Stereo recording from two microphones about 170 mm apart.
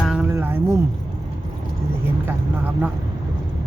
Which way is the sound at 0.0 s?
5° right (ahead or behind).